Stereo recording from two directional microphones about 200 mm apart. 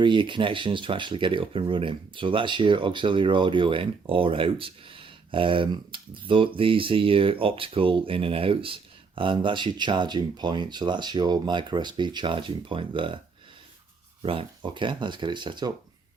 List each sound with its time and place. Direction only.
0.0 s speech: 25° right (ahead or behind)
14.2 s speech: 25° right (ahead or behind)